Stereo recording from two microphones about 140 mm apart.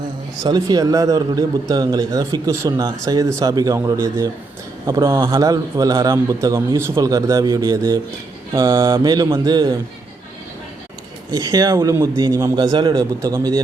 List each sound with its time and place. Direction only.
0.4 s a man's voice: 30° right (ahead or behind)
11.3 s a man's voice: 30° right (ahead or behind)